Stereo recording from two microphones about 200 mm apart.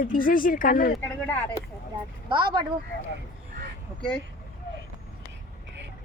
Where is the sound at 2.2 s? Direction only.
25° right (ahead or behind).